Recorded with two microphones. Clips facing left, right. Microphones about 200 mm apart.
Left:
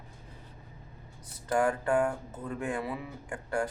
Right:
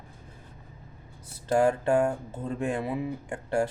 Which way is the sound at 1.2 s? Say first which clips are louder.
Right 4 dB; 25° right (ahead or behind).